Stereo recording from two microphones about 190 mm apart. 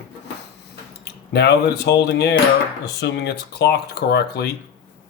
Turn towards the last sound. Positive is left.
turn(degrees=60)  # may be behind; listen again after turning